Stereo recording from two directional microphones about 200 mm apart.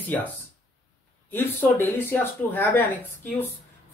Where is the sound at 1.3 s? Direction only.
10° left (ahead or behind).